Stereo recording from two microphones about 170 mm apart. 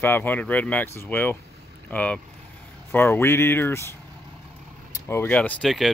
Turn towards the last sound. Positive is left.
turn(degrees=0)  # may be behind; listen again after turning